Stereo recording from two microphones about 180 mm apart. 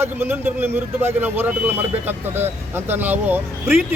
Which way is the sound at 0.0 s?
10° right (ahead or behind).